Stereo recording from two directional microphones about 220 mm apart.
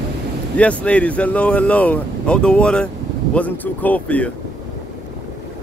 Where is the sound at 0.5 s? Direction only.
5° left (ahead or behind).